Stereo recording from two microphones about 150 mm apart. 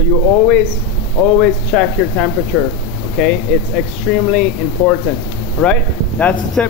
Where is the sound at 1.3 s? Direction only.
5° left (ahead or behind).